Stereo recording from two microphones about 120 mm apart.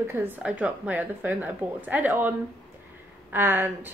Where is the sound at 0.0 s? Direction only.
20° right (ahead or behind).